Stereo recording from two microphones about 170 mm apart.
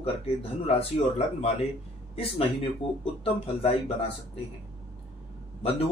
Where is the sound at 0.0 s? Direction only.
35° left (ahead or behind).